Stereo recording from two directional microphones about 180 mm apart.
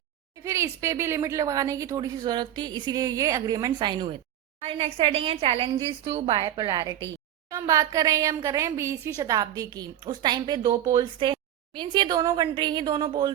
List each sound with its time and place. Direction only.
0.4 s a woman's voice: 15° right (ahead or behind)